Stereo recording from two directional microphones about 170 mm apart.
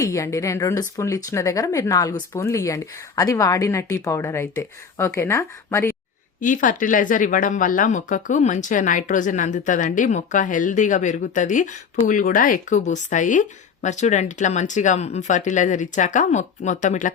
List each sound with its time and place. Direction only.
0.0 s speech: 20° left (ahead or behind)
6.4 s speech: 50° left (ahead or behind)